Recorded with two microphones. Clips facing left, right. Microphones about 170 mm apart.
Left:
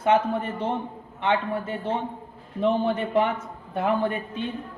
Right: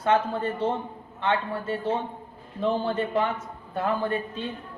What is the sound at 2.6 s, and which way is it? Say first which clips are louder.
A man's voice: left 2 dB; 20° left (ahead or behind).